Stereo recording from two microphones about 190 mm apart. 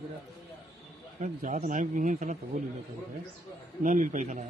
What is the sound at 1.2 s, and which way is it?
A man's voice, 40° right (ahead or behind).